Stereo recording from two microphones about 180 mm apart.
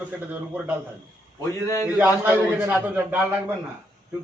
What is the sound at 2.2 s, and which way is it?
A man's voice, 10° right (ahead or behind).